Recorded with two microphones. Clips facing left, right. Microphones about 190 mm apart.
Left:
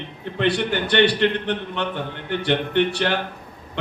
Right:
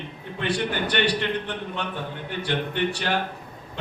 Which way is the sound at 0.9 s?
70° left (ahead or behind).